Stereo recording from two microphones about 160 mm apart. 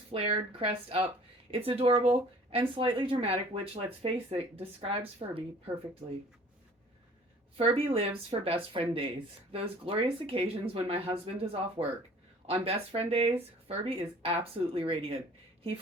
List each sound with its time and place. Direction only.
0.1 s speech: 35° right (ahead or behind)
7.6 s speech: 35° right (ahead or behind)